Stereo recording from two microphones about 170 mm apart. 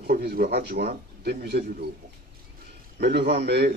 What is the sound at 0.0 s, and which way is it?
Speech, 65° right (ahead or behind).